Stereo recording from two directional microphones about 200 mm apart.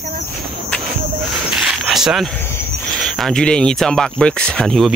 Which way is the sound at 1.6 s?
Centre (ahead or behind).